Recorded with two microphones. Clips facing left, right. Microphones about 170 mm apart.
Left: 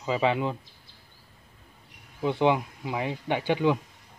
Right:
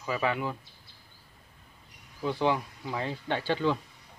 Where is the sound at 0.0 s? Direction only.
20° left (ahead or behind).